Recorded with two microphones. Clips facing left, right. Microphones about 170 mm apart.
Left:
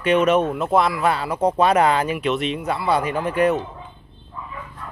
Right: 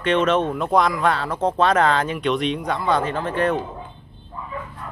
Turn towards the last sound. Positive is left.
turn(degrees=10)  # may be behind; listen again after turning